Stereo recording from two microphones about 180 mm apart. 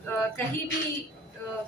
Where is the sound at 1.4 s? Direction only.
15° left (ahead or behind).